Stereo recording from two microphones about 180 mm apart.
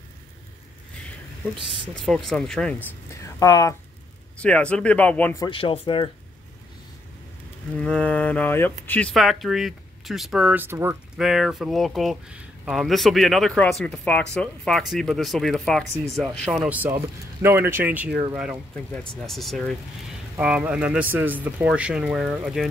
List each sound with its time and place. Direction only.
2.0 s speech: 5° left (ahead or behind)
3.1 s a sound: 20° left (ahead or behind)
4.4 s speech: 5° left (ahead or behind)
5.4 s speech: 30° left (ahead or behind)
7.7 s speech: 5° left (ahead or behind); by 11.0 s 15° right (ahead or behind)
11.1 s speech: 5° right (ahead or behind)